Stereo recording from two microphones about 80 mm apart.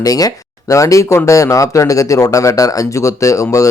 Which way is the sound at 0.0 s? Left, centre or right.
Left.